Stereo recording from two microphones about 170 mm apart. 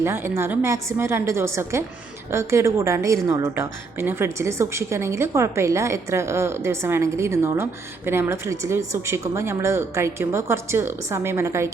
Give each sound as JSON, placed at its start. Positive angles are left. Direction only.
{"t": 0.0, "sound": "a woman's voice", "side_deg": -15}